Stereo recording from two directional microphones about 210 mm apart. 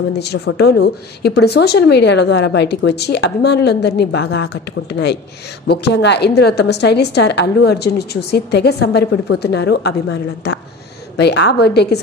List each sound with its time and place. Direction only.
0.2 s a woman's voice: 50° left (ahead or behind)